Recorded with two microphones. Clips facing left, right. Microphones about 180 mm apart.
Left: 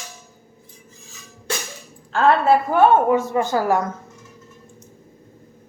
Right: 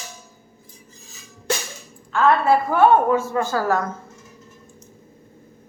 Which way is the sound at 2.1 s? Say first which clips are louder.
Left 1 dB; 30° left (ahead or behind).